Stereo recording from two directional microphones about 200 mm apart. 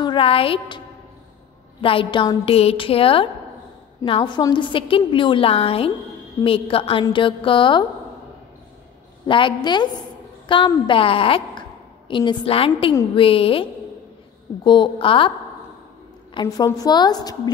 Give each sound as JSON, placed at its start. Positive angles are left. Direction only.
{"t": 0.0, "sound": "a woman's voice", "side_deg": 25}
{"t": 9.2, "sound": "a woman's voice", "side_deg": 25}
{"t": 16.3, "sound": "a woman's voice", "side_deg": 20}